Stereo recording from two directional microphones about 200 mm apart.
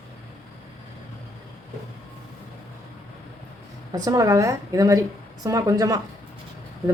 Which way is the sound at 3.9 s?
15° right (ahead or behind).